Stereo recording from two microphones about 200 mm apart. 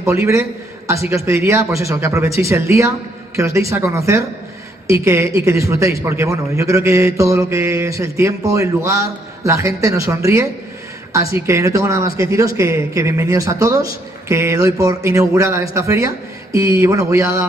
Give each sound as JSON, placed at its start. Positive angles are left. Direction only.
{"t": 0.0, "sound": "a man's voice", "side_deg": -15}